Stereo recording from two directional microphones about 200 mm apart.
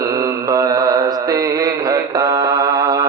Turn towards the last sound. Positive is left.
turn(degrees=-15)  # may be behind; listen again after turning